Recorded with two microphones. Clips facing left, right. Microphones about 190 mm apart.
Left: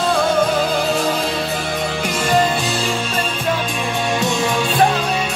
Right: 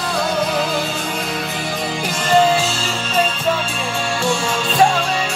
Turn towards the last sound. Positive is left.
turn(degrees=20)  # may be behind; listen again after turning